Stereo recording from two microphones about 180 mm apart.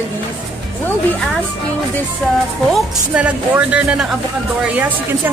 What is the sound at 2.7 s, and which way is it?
Speech, 5° right (ahead or behind).